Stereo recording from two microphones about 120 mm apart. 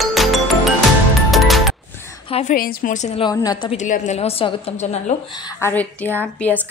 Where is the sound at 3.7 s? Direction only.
65° left (ahead or behind).